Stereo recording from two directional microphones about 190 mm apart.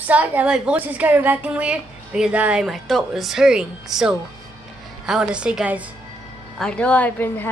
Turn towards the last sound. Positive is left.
turn(degrees=10)  # may be behind; listen again after turning